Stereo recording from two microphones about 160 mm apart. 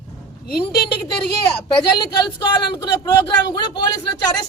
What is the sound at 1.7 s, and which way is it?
Speech, 30° left (ahead or behind).